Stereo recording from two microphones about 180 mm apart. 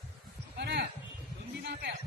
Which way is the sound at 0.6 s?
65° right (ahead or behind).